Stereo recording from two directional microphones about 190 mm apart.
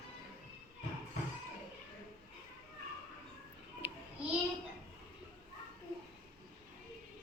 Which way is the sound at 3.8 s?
10° right (ahead or behind).